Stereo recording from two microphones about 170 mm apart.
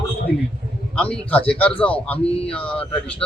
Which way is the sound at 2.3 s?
35° left (ahead or behind).